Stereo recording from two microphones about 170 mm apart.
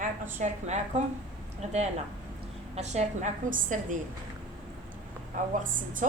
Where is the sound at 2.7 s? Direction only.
40° right (ahead or behind).